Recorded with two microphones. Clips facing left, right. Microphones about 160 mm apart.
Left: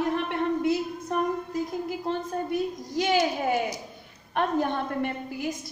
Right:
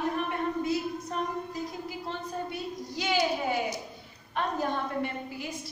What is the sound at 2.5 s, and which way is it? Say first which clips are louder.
Speech: left 7 dB; 45° left (ahead or behind).